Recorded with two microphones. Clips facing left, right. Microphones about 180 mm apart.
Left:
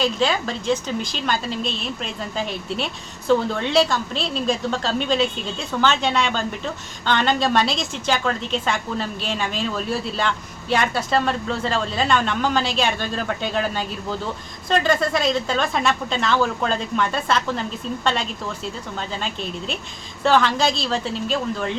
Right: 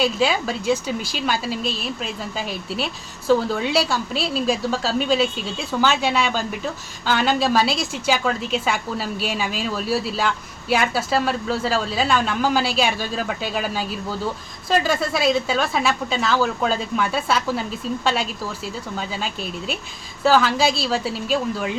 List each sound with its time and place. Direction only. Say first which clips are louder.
0.0 s a woman's voice: right 1 dB; 10° right (ahead or behind)